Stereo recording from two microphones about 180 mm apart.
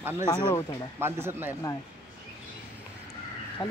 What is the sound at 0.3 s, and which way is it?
Speech, 25° left (ahead or behind).